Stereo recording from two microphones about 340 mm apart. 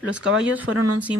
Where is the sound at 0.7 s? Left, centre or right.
Right.